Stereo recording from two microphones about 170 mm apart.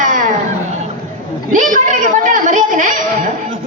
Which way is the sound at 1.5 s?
50° right (ahead or behind).